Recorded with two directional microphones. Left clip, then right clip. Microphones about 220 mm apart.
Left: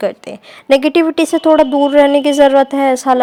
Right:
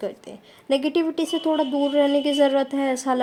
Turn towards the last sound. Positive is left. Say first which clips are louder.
# left 11 dB
turn(degrees=25)  # may be behind; listen again after turning